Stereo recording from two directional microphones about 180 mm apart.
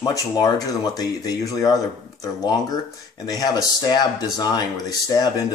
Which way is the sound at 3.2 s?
20° left (ahead or behind).